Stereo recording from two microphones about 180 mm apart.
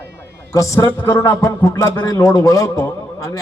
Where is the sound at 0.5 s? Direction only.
20° left (ahead or behind).